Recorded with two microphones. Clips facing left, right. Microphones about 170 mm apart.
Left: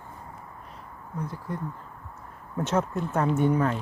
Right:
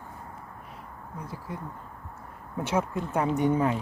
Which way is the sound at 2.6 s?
10° right (ahead or behind).